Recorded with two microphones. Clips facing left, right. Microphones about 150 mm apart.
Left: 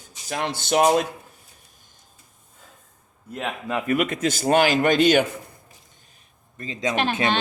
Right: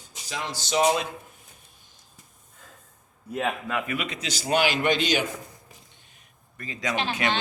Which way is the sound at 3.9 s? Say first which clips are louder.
Left 9 dB; 50° left (ahead or behind).